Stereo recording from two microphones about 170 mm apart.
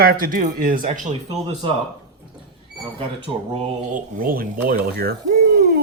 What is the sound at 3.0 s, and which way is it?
Speech, 35° right (ahead or behind).